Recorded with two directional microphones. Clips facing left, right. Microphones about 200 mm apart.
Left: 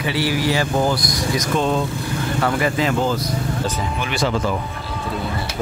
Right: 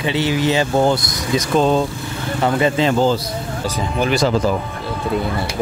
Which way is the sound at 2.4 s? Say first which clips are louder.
Right 5 dB; 25° right (ahead or behind).